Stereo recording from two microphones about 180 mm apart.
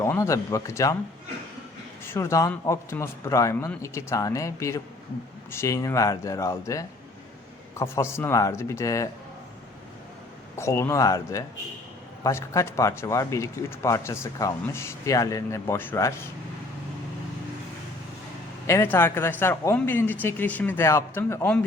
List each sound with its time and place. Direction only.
0.0 s speech: 15° left (ahead or behind)
2.0 s speech: 15° left (ahead or behind)
10.6 s speech: 15° left (ahead or behind)
18.6 s speech: 15° left (ahead or behind)